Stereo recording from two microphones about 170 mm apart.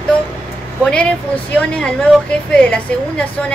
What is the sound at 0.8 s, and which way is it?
A woman's voice, 5° left (ahead or behind).